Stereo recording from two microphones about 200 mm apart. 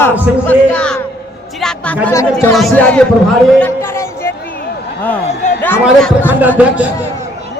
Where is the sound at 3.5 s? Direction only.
10° left (ahead or behind).